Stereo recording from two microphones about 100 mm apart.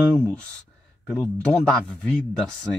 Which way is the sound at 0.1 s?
10° left (ahead or behind).